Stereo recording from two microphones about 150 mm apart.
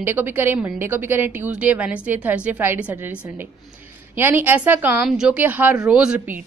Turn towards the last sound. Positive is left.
turn(degrees=-10)  # may be behind; listen again after turning